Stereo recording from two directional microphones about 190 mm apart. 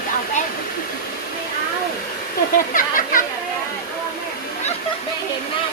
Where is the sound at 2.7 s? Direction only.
45° left (ahead or behind).